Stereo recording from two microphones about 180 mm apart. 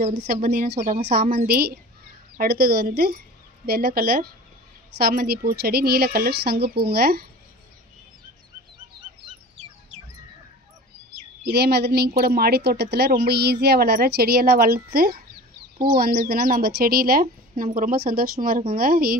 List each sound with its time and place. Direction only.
0.1 s a woman's voice: 60° right (ahead or behind)
1.2 s a woman's voice: 35° right (ahead or behind)
1.5 s a woman's voice: 60° right (ahead or behind)
11.5 s a woman's voice: 65° right (ahead or behind)